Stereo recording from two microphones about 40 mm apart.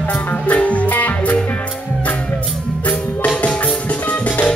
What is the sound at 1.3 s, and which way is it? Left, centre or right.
Music, left.